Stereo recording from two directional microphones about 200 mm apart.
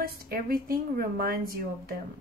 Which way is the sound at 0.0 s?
45° right (ahead or behind).